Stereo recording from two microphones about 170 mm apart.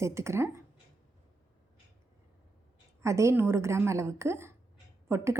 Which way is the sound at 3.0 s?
15° right (ahead or behind).